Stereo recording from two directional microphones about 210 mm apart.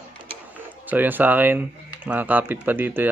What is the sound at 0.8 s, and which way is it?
A man's voice, 10° right (ahead or behind).